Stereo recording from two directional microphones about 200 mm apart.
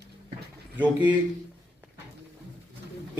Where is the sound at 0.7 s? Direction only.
10° right (ahead or behind).